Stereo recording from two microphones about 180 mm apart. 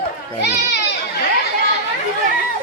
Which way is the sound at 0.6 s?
70° left (ahead or behind).